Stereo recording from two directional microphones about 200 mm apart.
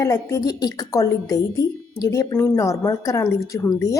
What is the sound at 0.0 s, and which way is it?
Speech, 15° left (ahead or behind).